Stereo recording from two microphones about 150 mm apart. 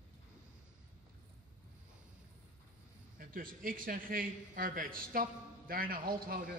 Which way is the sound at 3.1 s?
70° right (ahead or behind).